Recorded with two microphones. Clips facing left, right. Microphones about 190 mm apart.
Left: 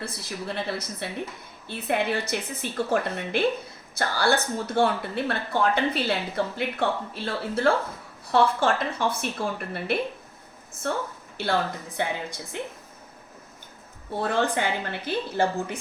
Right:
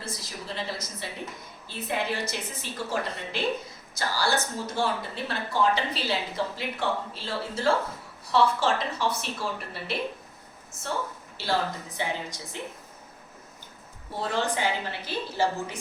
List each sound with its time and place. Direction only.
0.0 s a woman's voice: 60° left (ahead or behind)
11.4 s a woman's voice: 55° left (ahead or behind)
14.2 s speech: 55° left (ahead or behind)